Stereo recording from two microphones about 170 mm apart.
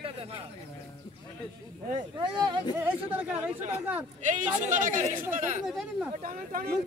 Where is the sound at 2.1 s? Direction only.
25° right (ahead or behind).